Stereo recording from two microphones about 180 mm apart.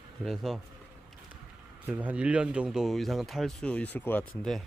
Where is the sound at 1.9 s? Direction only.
10° right (ahead or behind); by 4.2 s 10° left (ahead or behind).